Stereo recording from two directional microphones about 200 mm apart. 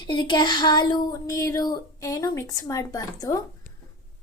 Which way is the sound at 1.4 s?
15° left (ahead or behind).